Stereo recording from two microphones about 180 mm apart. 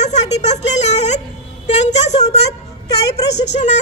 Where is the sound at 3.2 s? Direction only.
70° left (ahead or behind).